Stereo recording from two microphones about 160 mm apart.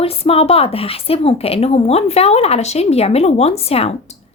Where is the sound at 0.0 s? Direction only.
40° left (ahead or behind).